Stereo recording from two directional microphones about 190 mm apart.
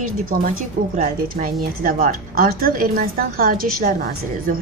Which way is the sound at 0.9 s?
45° right (ahead or behind).